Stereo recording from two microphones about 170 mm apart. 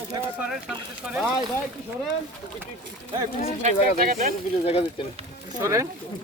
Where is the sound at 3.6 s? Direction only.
50° right (ahead or behind).